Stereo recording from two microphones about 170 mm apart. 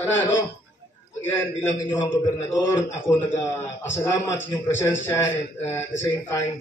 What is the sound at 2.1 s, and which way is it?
A man's voice, 15° left (ahead or behind).